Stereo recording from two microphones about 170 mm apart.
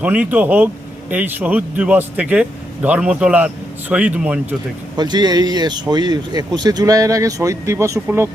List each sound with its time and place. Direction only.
0.0 s speech: 10° right (ahead or behind)
4.9 s speech: 25° right (ahead or behind)